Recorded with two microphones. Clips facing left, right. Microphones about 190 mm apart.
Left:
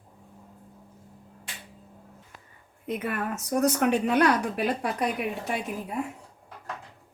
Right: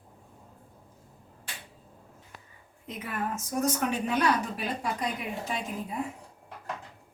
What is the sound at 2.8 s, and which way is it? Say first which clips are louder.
Speech: left 4 dB; 60° left (ahead or behind).